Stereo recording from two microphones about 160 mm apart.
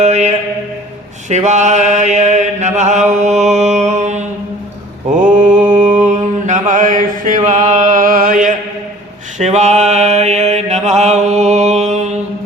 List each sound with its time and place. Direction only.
0.0 s a sound: 45° right (ahead or behind)
1.3 s mantra: 45° right (ahead or behind)
5.5 s mantra: 10° right (ahead or behind)
5.7 s mantra: 55° right (ahead or behind)
9.4 s mantra: 45° right (ahead or behind)